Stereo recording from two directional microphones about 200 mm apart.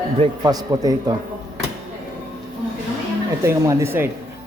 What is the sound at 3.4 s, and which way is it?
Speech, 15° right (ahead or behind).